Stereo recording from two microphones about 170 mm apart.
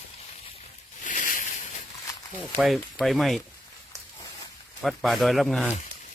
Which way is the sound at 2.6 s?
Centre (ahead or behind).